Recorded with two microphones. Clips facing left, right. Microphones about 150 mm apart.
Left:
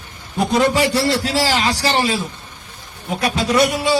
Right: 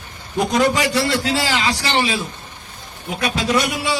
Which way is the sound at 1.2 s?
35° left (ahead or behind).